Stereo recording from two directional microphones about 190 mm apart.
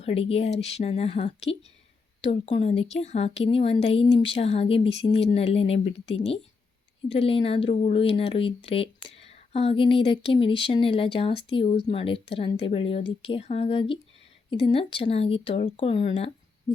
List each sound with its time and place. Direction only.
0.0 s speech: 30° left (ahead or behind)
16.7 s owl: 20° left (ahead or behind)